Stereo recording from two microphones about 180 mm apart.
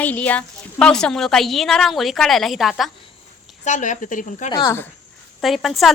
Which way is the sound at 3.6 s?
40° left (ahead or behind).